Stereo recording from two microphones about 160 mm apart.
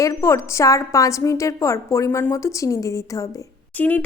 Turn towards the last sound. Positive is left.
turn(degrees=10)  # may be behind; listen again after turning